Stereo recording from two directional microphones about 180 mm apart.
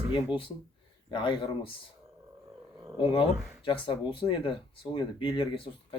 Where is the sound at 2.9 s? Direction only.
30° left (ahead or behind).